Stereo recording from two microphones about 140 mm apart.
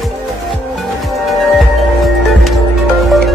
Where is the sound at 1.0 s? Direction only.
Centre (ahead or behind).